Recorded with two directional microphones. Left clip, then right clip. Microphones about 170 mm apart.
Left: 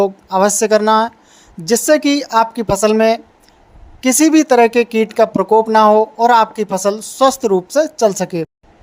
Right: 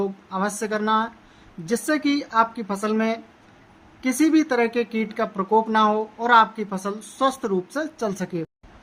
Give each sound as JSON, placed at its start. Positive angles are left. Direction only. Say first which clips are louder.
{"t": 0.0, "sound": "a woman's voice", "louder": "left 13 dB", "side_deg": 35}